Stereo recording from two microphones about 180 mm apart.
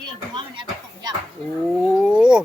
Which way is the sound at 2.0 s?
5° right (ahead or behind).